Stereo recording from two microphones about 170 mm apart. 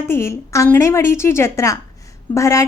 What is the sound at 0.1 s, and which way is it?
A woman's voice, 15° left (ahead or behind).